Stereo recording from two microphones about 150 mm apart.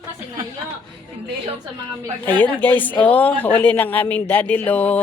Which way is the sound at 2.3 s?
10° left (ahead or behind).